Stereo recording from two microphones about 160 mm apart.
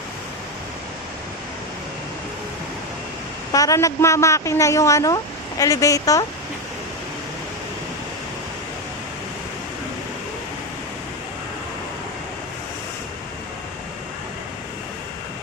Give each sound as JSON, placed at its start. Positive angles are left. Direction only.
{"t": 3.5, "sound": "a man's voice", "side_deg": 20}